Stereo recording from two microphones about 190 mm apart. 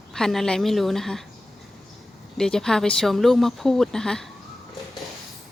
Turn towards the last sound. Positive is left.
turn(degrees=5)  # may be behind; listen again after turning